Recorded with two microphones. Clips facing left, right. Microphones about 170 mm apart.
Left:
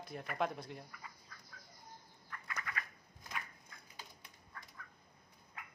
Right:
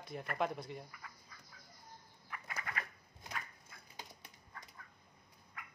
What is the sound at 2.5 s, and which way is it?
Bird, 35° right (ahead or behind).